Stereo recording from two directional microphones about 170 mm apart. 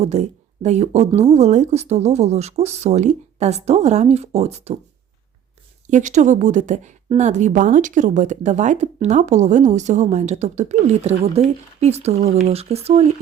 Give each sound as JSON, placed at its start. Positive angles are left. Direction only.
{"t": 0.0, "sound": "speech", "side_deg": -40}
{"t": 5.9, "sound": "speech", "side_deg": -45}